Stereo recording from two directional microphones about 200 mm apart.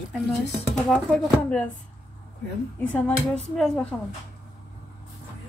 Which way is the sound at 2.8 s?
5° left (ahead or behind).